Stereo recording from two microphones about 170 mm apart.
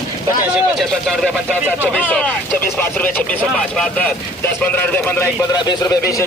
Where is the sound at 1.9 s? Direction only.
10° left (ahead or behind).